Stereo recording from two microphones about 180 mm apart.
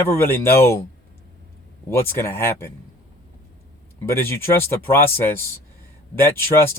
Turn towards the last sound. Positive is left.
turn(degrees=15)  # may be behind; listen again after turning